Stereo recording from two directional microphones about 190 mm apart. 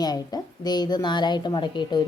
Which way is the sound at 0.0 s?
20° left (ahead or behind).